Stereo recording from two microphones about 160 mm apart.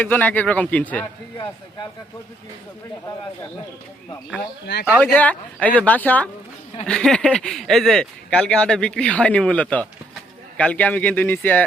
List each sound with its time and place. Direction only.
0.0 s speech: 10° left (ahead or behind)
4.6 s speech: 90° left
4.9 s speech: 10° left (ahead or behind)